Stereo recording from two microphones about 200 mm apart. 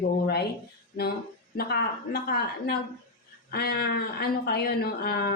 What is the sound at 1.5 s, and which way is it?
A woman's voice, 50° left (ahead or behind).